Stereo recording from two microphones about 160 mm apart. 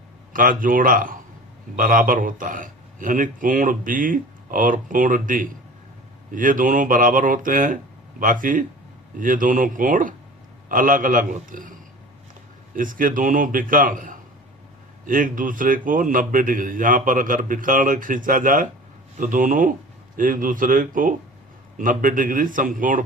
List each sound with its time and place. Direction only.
0.3 s a man's voice: 60° right (ahead or behind)